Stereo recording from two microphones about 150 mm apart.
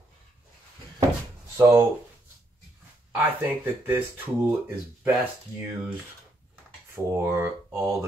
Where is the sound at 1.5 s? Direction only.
20° right (ahead or behind).